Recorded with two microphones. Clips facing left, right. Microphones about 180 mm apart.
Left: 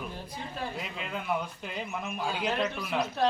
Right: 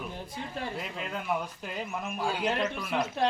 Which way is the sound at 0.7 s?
Centre (ahead or behind).